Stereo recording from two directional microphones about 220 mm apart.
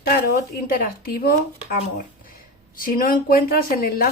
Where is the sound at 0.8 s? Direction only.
45° left (ahead or behind).